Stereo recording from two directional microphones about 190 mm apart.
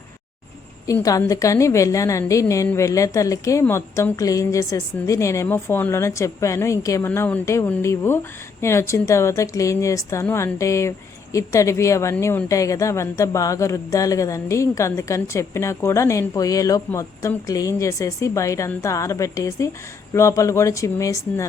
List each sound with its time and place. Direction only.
0.9 s a woman's voice: 15° left (ahead or behind)